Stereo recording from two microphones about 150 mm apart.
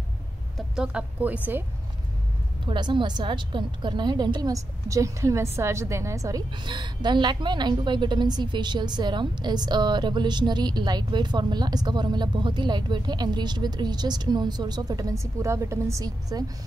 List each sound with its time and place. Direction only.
0.6 s a woman's voice: 5° right (ahead or behind)
2.6 s a woman's voice: 30° right (ahead or behind)